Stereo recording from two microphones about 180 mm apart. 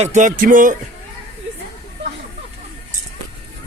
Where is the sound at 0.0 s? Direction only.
40° right (ahead or behind).